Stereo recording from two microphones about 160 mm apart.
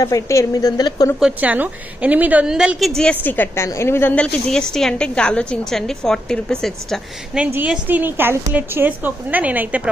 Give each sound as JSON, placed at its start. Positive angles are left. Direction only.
{"t": 0.0, "sound": "a woman's voice", "side_deg": 20}
{"t": 1.2, "sound": "a woman's voice", "side_deg": -10}
{"t": 7.5, "sound": "a woman's voice", "side_deg": -10}